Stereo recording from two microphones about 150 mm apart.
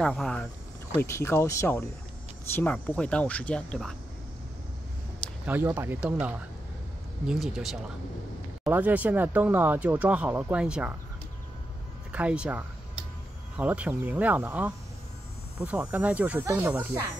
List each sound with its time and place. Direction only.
0.0 s speech: 5° left (ahead or behind)
0.9 s speech: 20° left (ahead or behind)
5.5 s speech: 15° right (ahead or behind)
12.1 s speech: 10° right (ahead or behind)